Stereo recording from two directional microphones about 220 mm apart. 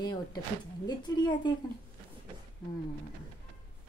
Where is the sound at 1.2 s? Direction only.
20° left (ahead or behind).